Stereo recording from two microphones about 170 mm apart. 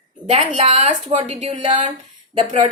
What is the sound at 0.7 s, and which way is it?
Speech, 45° right (ahead or behind).